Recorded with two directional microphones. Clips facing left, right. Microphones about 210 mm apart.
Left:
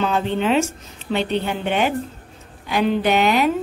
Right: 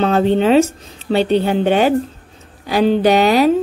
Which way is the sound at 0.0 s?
40° right (ahead or behind).